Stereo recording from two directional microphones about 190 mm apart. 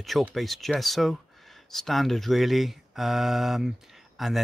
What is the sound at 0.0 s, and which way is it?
Speech, centre (ahead or behind).